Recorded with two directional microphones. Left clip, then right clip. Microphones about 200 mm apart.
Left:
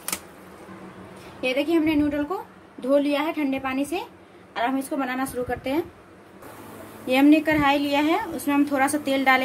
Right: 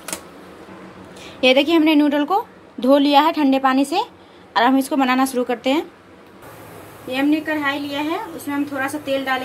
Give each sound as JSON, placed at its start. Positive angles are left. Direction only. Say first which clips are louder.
{"t": 1.4, "sound": "a woman's voice", "louder": "right 8 dB", "side_deg": -40}
{"t": 7.2, "sound": "a woman's voice", "louder": "left 2 dB", "side_deg": 55}